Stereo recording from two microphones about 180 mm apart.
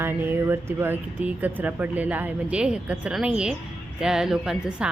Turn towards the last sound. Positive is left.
turn(degrees=-5)  # may be behind; listen again after turning